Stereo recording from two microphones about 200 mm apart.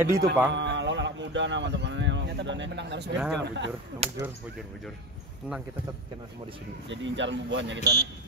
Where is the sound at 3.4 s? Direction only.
60° right (ahead or behind).